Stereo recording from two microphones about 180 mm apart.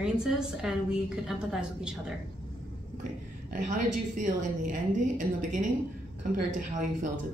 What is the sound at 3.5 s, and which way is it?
A woman's voice, 45° right (ahead or behind).